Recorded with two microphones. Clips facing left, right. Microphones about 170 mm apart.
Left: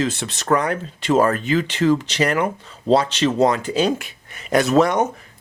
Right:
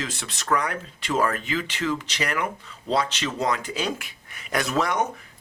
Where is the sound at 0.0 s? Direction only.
25° left (ahead or behind).